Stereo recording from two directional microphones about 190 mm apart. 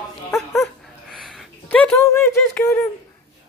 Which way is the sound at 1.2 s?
5° left (ahead or behind).